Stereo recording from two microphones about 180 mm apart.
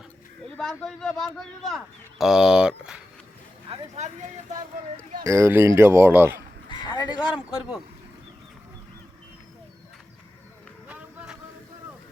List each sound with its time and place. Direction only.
0.5 s a man's voice: 5° left (ahead or behind)
3.7 s speech: 40° right (ahead or behind)
5.2 s speech: 15° right (ahead or behind)
6.8 s speech: 25° left (ahead or behind)
7.3 s a man's voice: 5° right (ahead or behind)
10.8 s run: 10° right (ahead or behind)